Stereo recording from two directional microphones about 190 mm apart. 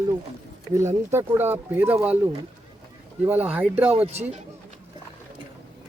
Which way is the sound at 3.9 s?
35° right (ahead or behind).